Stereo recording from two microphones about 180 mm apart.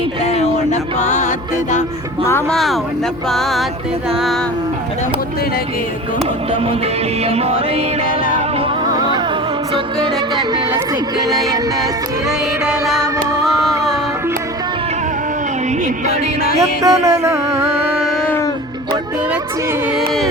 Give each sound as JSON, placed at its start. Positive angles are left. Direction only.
{"t": 0.3, "sound": "music", "side_deg": 35}
{"t": 2.5, "sound": "music", "side_deg": 0}
{"t": 7.3, "sound": "music", "side_deg": -35}
{"t": 8.9, "sound": "music", "side_deg": -20}
{"t": 13.0, "sound": "music", "side_deg": -15}
{"t": 16.6, "sound": "music", "side_deg": -15}